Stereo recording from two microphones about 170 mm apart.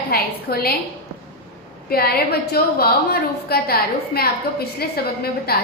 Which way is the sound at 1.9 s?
65° left (ahead or behind).